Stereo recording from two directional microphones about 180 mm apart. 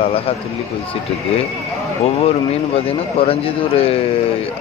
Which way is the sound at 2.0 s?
35° left (ahead or behind).